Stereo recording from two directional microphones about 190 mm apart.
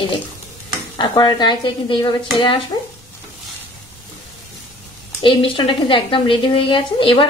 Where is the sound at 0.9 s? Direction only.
25° left (ahead or behind).